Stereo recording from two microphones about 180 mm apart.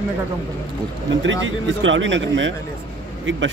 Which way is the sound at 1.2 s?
90° right.